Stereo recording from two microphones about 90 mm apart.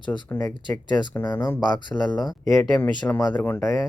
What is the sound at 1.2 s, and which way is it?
Speech, 50° left (ahead or behind).